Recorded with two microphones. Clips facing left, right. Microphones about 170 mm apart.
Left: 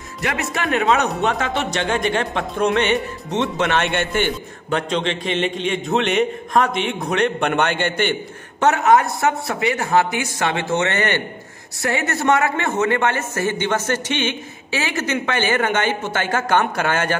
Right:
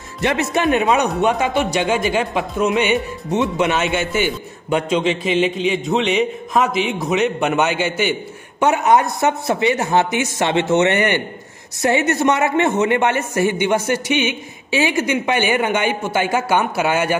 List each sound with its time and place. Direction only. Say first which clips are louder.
0.2 s a man's voice: right 6 dB; 25° right (ahead or behind); by 17.1 s 10° right (ahead or behind)